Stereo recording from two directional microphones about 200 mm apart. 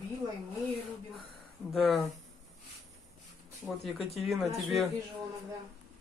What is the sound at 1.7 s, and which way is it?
Speech, centre (ahead or behind).